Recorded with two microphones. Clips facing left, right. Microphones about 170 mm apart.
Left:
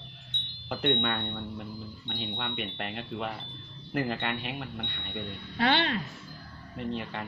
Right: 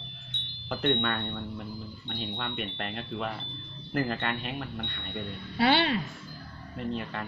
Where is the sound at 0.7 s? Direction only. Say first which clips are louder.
Right 1 dB; 10° left (ahead or behind).